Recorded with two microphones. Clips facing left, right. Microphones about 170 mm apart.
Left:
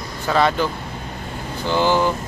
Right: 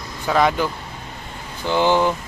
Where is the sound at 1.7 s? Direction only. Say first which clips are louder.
Right 1 dB; 20° right (ahead or behind).